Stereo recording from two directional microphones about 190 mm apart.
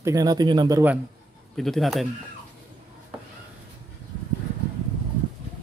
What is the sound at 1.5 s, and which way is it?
Speech, centre (ahead or behind).